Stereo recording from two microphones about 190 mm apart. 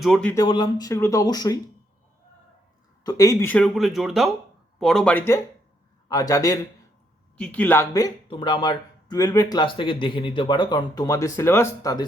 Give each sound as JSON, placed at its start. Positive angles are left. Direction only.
{"t": 0.0, "sound": "speech", "side_deg": 5}
{"t": 0.3, "sound": "speech", "side_deg": 25}
{"t": 3.0, "sound": "a man's voice", "side_deg": 20}
{"t": 7.3, "sound": "speech", "side_deg": 5}